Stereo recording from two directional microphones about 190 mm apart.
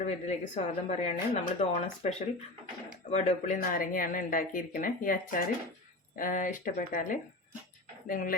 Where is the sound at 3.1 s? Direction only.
40° left (ahead or behind).